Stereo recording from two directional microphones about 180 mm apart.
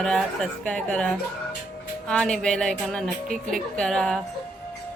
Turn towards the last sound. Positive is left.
turn(degrees=0)  # may be behind; listen again after turning